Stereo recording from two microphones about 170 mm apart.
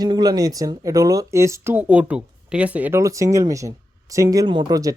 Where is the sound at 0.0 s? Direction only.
25° right (ahead or behind).